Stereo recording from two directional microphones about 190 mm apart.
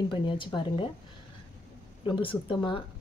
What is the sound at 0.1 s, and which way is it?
Speech, 25° left (ahead or behind).